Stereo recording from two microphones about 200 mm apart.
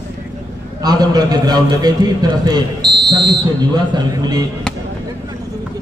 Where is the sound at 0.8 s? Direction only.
20° right (ahead or behind).